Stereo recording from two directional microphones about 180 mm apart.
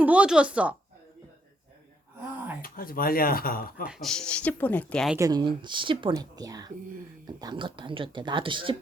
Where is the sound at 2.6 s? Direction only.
55° left (ahead or behind).